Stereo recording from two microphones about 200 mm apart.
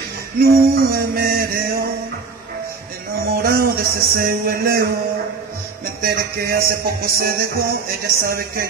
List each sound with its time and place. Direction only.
0.4 s music: 50° right (ahead or behind)
3.4 s music: 50° right (ahead or behind)
6.0 s music: 50° right (ahead or behind)